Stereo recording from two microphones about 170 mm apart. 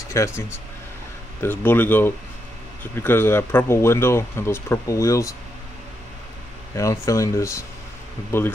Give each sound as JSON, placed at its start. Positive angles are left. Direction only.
{"t": 0.1, "sound": "speech", "side_deg": 15}
{"t": 6.7, "sound": "speech", "side_deg": 20}